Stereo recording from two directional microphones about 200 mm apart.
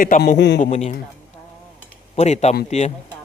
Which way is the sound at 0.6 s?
35° left (ahead or behind).